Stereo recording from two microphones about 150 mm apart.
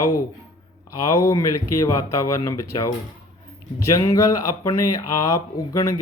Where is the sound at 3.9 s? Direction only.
20° left (ahead or behind).